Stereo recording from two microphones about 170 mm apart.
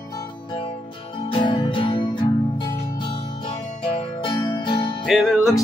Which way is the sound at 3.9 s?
30° left (ahead or behind).